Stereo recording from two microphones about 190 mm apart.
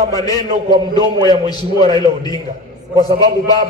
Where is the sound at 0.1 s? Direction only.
20° left (ahead or behind).